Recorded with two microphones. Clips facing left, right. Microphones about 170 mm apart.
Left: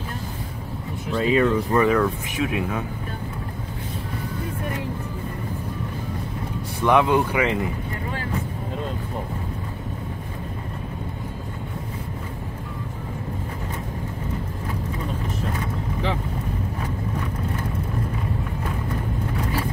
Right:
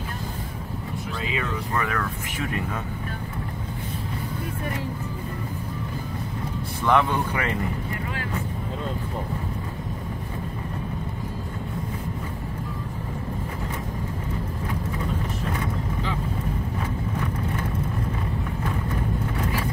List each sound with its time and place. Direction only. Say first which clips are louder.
1.3 s speech: left 10 dB; 35° left (ahead or behind)
1.9 s speech: left 9 dB; 10° left (ahead or behind)
6.9 s speech: left 3 dB; 10° left (ahead or behind)